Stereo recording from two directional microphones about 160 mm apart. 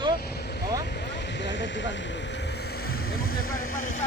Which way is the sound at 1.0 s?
90° left.